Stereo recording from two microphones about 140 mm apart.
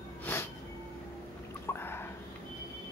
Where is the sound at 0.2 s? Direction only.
15° left (ahead or behind).